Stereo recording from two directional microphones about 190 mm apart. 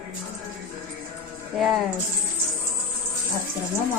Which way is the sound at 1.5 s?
Centre (ahead or behind).